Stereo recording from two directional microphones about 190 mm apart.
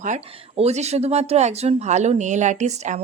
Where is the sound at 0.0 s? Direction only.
35° right (ahead or behind).